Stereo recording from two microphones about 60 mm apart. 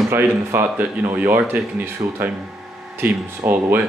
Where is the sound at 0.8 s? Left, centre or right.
Right.